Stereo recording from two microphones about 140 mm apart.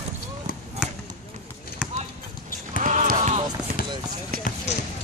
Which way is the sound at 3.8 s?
90° left.